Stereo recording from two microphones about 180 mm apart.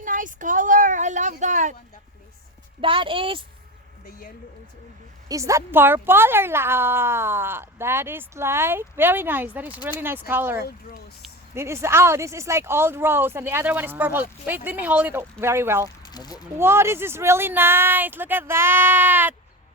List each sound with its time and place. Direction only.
0.0 s speech: 45° right (ahead or behind)
2.8 s a woman's voice: 30° right (ahead or behind)
5.3 s a woman's voice: 15° right (ahead or behind)
10.6 s speech: 60° left (ahead or behind)
11.5 s a woman's voice: 15° right (ahead or behind)
16.0 s speech: 20° left (ahead or behind)
16.6 s a woman's voice: 15° right (ahead or behind)